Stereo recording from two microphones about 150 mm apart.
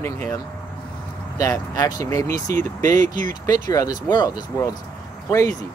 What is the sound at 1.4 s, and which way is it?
Speech, 25° left (ahead or behind).